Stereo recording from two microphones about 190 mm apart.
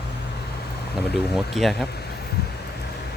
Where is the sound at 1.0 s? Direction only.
60° left (ahead or behind).